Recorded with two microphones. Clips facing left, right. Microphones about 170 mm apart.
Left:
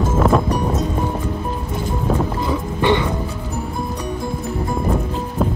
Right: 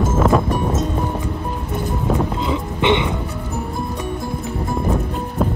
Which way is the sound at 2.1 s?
20° right (ahead or behind).